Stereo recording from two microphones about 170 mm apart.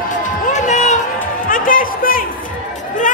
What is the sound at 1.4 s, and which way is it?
Music, 55° left (ahead or behind).